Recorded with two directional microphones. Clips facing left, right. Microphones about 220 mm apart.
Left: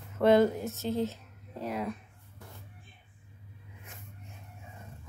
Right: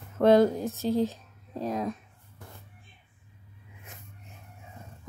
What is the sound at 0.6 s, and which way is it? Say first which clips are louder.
Speech: right 4 dB; 15° right (ahead or behind).